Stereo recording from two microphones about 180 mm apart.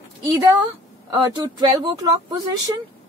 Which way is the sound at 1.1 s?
25° right (ahead or behind).